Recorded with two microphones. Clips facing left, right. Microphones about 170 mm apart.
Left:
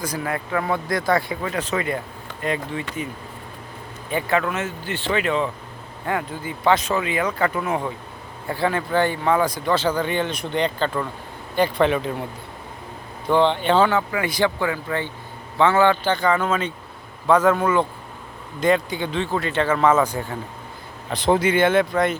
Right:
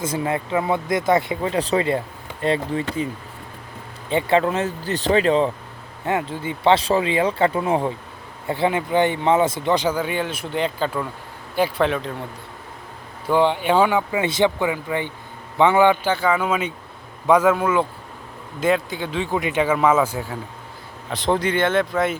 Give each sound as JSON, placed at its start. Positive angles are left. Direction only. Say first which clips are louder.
{"t": 0.0, "sound": "speech", "louder": "right 3 dB", "side_deg": -25}
{"t": 4.1, "sound": "speech", "louder": "right 4 dB", "side_deg": -25}
{"t": 13.2, "sound": "speech", "louder": "even", "side_deg": -10}